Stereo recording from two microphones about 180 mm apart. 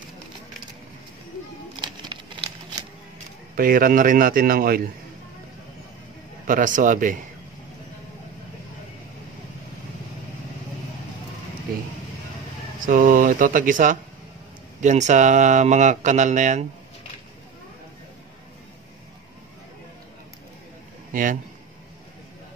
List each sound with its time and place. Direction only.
3.5 s a man's voice: 55° right (ahead or behind)
6.4 s a man's voice: 50° right (ahead or behind)
12.8 s speech: 50° right (ahead or behind)
21.1 s a sound: 50° right (ahead or behind)